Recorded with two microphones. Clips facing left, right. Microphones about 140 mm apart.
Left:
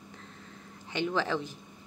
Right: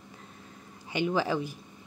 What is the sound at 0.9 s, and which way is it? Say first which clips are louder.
Speech: right 2 dB; 10° right (ahead or behind).